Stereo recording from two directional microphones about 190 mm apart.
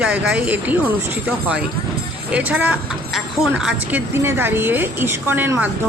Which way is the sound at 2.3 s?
10° right (ahead or behind).